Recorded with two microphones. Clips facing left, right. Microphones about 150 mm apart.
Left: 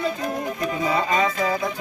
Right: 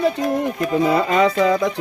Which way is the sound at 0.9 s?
70° right (ahead or behind).